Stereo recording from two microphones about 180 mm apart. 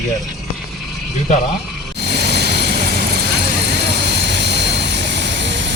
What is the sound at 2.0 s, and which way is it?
Vehicle, 65° right (ahead or behind).